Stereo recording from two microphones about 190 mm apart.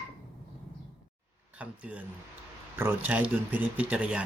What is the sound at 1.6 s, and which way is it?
Speech, 5° right (ahead or behind).